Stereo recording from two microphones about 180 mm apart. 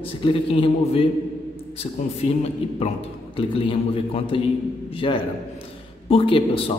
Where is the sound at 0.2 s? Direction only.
30° left (ahead or behind).